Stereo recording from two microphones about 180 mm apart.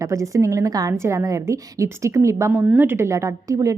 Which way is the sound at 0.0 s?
15° right (ahead or behind).